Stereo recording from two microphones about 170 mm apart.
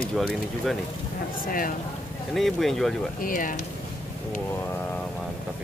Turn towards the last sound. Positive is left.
turn(degrees=50)  # may be behind; listen again after turning